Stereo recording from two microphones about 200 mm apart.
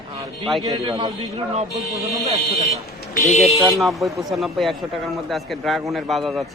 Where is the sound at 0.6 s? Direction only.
20° right (ahead or behind).